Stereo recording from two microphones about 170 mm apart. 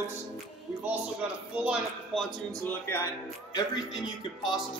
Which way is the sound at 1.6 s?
Centre (ahead or behind).